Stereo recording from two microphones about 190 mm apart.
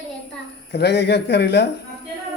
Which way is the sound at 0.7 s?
60° left (ahead or behind).